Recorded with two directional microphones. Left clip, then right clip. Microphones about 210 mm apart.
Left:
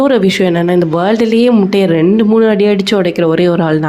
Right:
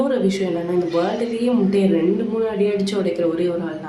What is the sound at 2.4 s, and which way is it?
Speech, 45° left (ahead or behind).